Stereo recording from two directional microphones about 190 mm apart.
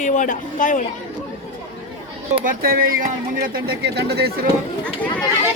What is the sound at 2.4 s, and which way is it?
Speech, 50° right (ahead or behind).